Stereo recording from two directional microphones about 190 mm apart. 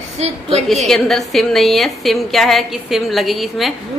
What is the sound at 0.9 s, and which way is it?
A woman's voice, centre (ahead or behind).